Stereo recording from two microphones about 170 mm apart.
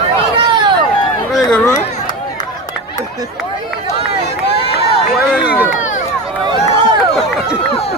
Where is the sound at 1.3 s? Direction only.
5° left (ahead or behind).